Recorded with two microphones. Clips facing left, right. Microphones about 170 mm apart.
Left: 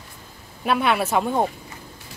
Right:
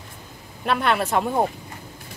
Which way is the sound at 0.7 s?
Centre (ahead or behind).